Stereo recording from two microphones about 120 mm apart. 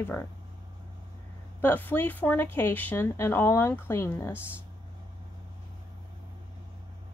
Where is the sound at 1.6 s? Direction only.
15° left (ahead or behind).